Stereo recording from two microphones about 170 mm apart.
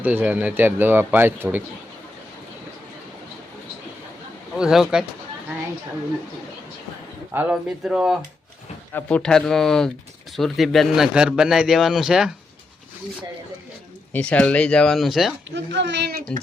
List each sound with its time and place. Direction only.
0.0 s speech: 10° right (ahead or behind)
4.5 s a man's voice: 5° right (ahead or behind)
7.3 s a man's voice: 5° right (ahead or behind)
8.9 s a man's voice: 10° left (ahead or behind)
14.1 s a man's voice: 5° left (ahead or behind)
15.5 s speech: 90° right; by 16.4 s 65° right (ahead or behind)